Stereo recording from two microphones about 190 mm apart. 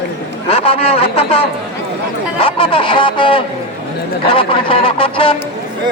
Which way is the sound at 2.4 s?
30° left (ahead or behind).